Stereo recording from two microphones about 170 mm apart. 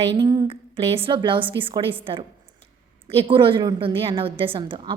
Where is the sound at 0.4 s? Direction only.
35° right (ahead or behind).